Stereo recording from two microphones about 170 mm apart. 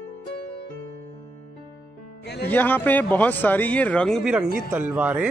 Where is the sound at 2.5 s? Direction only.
10° left (ahead or behind).